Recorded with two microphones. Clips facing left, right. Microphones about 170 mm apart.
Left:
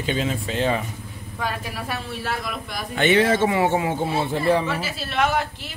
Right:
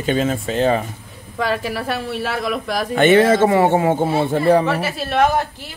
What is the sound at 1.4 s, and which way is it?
A woman's voice, 80° right.